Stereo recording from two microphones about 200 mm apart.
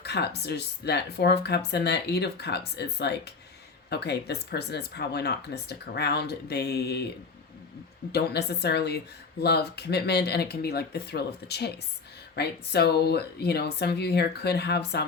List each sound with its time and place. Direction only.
0.0 s speech: 55° left (ahead or behind)
8.1 s speech: 55° left (ahead or behind)